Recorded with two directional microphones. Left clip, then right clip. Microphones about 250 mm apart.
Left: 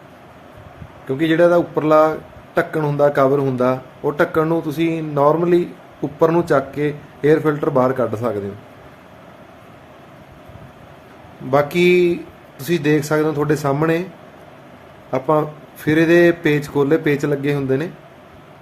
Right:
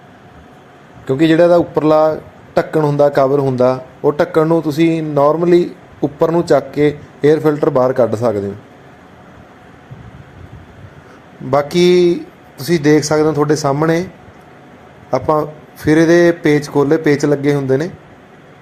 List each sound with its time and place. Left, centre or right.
1.0 s a man's voice: right
11.5 s a man's voice: centre
15.1 s a man's voice: centre